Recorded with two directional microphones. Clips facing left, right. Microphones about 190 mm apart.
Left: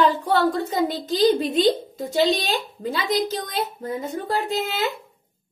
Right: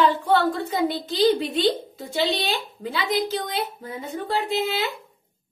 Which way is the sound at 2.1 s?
40° left (ahead or behind).